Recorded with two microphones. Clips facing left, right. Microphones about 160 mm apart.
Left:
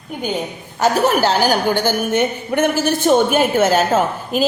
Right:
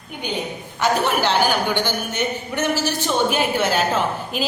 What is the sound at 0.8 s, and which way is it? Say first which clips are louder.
A woman's voice: left 4 dB; 40° left (ahead or behind).